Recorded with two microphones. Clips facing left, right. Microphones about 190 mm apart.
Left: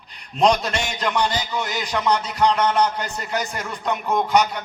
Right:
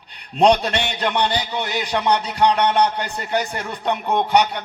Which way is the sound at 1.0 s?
30° right (ahead or behind).